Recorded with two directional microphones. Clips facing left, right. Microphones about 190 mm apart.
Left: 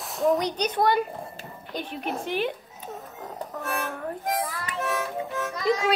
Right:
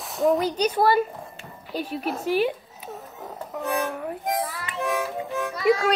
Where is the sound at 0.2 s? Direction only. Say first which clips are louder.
Right 2 dB; centre (ahead or behind).